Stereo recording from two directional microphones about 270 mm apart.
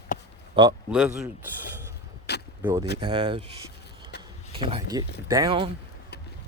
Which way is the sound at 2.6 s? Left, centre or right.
Centre.